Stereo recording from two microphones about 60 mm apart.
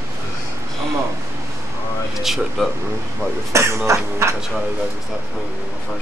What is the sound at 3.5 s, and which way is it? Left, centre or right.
Speech, right.